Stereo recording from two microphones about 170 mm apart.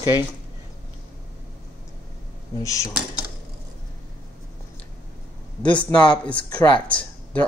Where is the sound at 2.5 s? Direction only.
20° left (ahead or behind).